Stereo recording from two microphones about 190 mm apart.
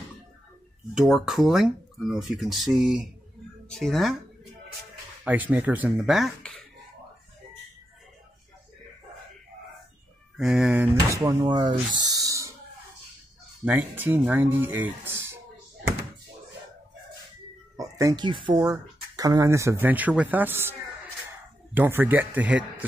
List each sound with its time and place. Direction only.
0.9 s speech: centre (ahead or behind)
5.2 s speech: 10° right (ahead or behind)
10.3 s speech: 5° right (ahead or behind)
13.7 s speech: 10° right (ahead or behind)
17.7 s speech: 15° right (ahead or behind)
21.7 s speech: 10° right (ahead or behind)